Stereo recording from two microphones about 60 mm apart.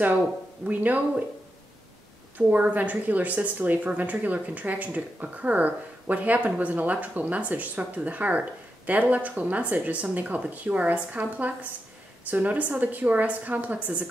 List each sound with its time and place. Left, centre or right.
0.7 s a woman's voice: right
2.3 s a woman's voice: right